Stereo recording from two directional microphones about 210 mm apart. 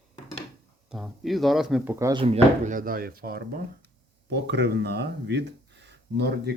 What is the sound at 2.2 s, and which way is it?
Speech, 30° right (ahead or behind).